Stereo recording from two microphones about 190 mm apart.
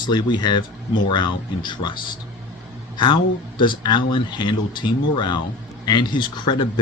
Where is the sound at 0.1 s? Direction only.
25° left (ahead or behind).